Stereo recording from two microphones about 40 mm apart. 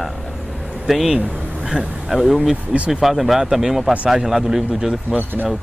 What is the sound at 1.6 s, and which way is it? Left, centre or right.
Speech, centre.